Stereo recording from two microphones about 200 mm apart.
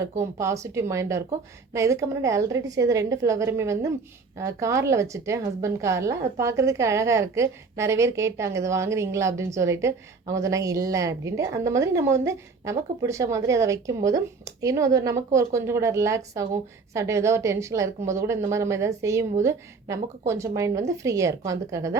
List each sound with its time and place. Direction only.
0.2 s a woman's voice: 15° right (ahead or behind)